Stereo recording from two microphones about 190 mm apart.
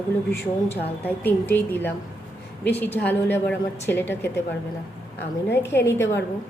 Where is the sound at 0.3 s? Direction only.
10° left (ahead or behind).